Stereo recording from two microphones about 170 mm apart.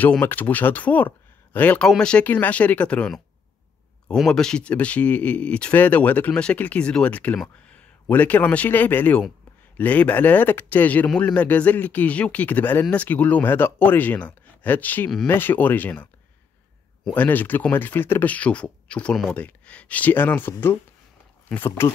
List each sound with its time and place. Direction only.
0.0 s speech: 10° left (ahead or behind)